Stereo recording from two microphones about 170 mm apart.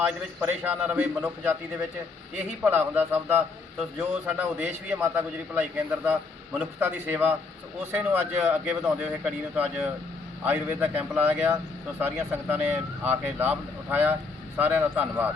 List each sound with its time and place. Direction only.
0.0 s speech: 10° right (ahead or behind)
2.6 s speech: 10° right (ahead or behind)